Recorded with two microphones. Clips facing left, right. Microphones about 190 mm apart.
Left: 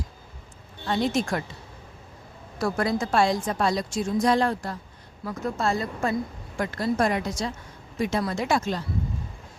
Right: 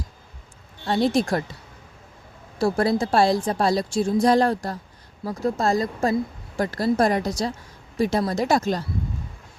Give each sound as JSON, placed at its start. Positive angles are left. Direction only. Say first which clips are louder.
{"t": 0.9, "sound": "a woman's voice", "louder": "right 4 dB", "side_deg": -35}
{"t": 2.6, "sound": "a woman's voice", "louder": "right 4 dB", "side_deg": -30}